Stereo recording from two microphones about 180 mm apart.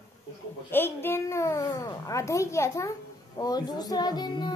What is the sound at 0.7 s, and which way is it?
A child's voice, 10° left (ahead or behind).